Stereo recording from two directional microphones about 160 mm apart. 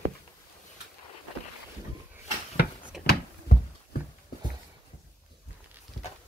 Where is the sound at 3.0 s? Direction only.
75° left (ahead or behind).